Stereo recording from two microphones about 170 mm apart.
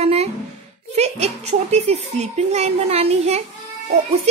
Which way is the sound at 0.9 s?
40° right (ahead or behind).